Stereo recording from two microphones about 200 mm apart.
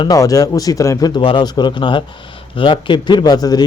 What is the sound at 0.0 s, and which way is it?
Speech, 15° left (ahead or behind).